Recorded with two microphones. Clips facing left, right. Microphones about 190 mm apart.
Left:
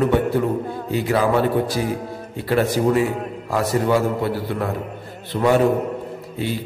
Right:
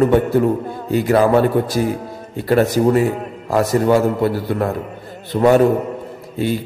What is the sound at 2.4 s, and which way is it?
A man's voice, 45° right (ahead or behind).